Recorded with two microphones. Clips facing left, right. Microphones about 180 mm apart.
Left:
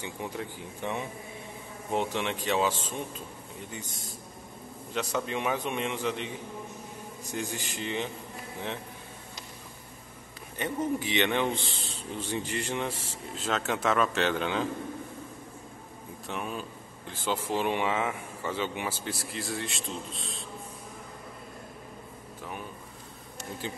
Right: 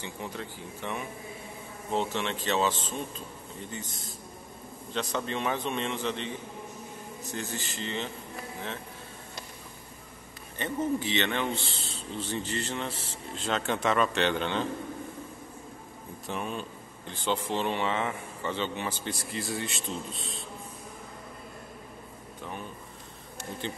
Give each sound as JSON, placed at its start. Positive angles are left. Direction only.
{"t": 0.0, "sound": "speech", "side_deg": 15}
{"t": 10.6, "sound": "speech", "side_deg": 15}
{"t": 16.3, "sound": "speech", "side_deg": 5}
{"t": 23.6, "sound": "speech", "side_deg": 5}